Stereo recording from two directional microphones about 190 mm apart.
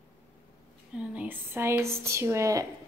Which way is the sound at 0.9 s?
10° right (ahead or behind).